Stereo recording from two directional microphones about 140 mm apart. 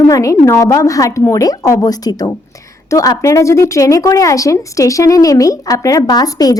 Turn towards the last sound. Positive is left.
turn(degrees=25)  # may be behind; listen again after turning